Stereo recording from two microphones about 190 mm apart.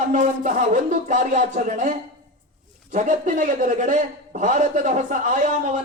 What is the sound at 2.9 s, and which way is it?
A man's voice, 45° right (ahead or behind).